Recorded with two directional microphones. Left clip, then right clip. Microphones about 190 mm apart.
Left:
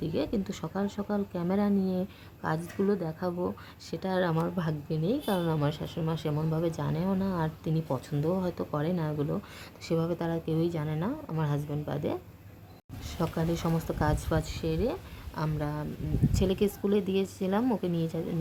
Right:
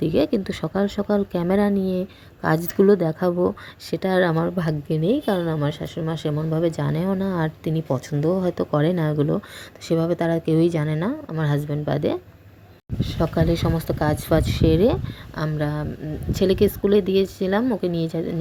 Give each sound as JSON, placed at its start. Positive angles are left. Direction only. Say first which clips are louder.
{"t": 0.0, "sound": "speech", "louder": "right 11 dB", "side_deg": -25}
{"t": 14.3, "sound": "speech", "louder": "right 12 dB", "side_deg": -25}
{"t": 15.4, "sound": "speech", "louder": "right 8 dB", "side_deg": -15}